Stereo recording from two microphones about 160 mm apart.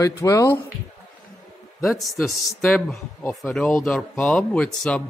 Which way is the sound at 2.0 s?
Centre (ahead or behind).